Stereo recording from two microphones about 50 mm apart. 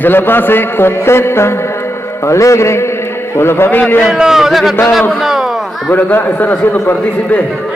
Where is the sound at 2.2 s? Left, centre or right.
Left.